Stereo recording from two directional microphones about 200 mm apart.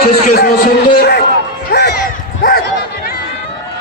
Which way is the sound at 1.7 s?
55° left (ahead or behind).